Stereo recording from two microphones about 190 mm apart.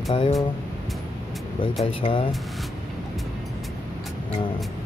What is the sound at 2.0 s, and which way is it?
Speech, 25° left (ahead or behind).